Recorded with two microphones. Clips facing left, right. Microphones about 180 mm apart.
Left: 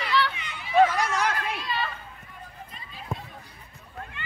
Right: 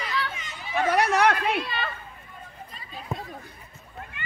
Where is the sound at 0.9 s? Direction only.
65° right (ahead or behind).